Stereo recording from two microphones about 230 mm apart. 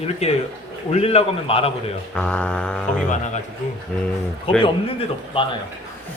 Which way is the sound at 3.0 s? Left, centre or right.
Left.